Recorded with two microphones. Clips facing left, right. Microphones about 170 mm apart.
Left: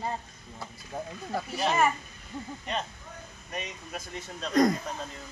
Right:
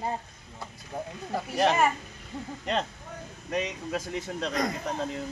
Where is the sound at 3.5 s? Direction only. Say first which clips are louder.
Right 8 dB; 90° right.